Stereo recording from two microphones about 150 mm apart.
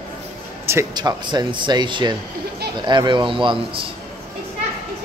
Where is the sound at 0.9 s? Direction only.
30° right (ahead or behind).